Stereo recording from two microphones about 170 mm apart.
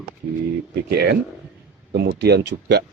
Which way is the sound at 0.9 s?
75° right (ahead or behind).